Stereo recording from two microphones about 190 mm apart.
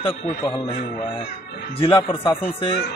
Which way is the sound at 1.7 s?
30° left (ahead or behind).